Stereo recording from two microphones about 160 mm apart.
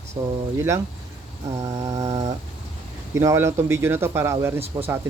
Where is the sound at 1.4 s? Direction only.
20° right (ahead or behind).